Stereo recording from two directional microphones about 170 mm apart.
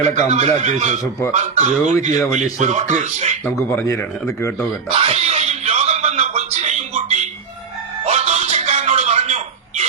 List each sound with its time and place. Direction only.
0.0 s a man's voice: 45° right (ahead or behind)
3.4 s speech: 10° left (ahead or behind)
4.9 s music: 35° right (ahead or behind)
8.0 s a sound: 40° right (ahead or behind)